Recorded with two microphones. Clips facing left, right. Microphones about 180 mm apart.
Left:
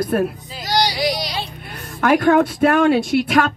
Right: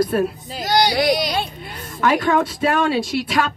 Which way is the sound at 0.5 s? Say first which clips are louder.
Right 6 dB; 50° right (ahead or behind).